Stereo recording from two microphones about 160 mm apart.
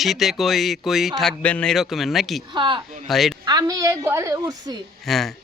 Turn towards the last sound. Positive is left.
turn(degrees=0)  # may be behind; listen again after turning